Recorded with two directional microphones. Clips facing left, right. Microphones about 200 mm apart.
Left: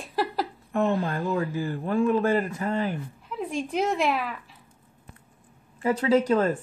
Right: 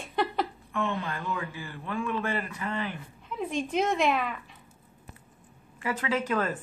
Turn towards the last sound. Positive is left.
turn(degrees=30)  # may be behind; listen again after turning